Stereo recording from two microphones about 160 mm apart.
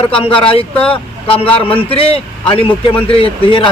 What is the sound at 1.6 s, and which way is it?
Speech, 35° left (ahead or behind).